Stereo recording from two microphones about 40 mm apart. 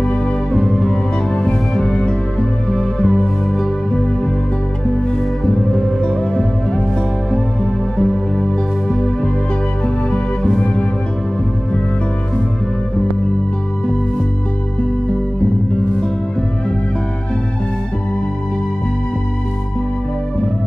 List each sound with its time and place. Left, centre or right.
0.0 s music: left
5.5 s music: centre
8.0 s music: centre